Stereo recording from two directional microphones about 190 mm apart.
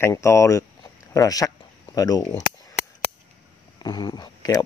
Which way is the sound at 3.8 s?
25° left (ahead or behind).